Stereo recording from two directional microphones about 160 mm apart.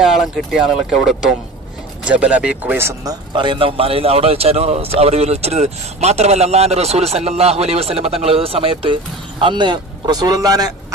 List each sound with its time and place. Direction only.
0.0 s a man's voice: centre (ahead or behind); by 10.7 s 25° right (ahead or behind)